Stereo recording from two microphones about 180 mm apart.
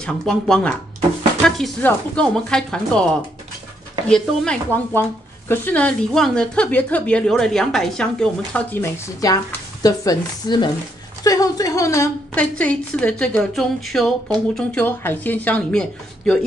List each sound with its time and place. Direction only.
0.0 s a woman's voice: 5° left (ahead or behind)
4.1 s a woman's voice: 5° left (ahead or behind)
8.5 s speech: 15° left (ahead or behind)
12.4 s a woman's voice: 5° left (ahead or behind)